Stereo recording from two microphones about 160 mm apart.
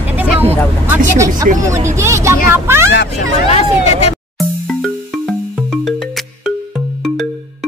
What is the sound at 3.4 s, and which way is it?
Speech, 40° left (ahead or behind).